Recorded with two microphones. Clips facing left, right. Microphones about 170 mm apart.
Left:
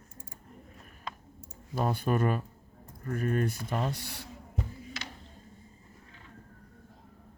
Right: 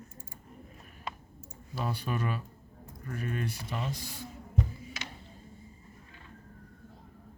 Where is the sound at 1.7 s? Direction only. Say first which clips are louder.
Left 6 dB; 50° left (ahead or behind); by 4.2 s 65° left (ahead or behind).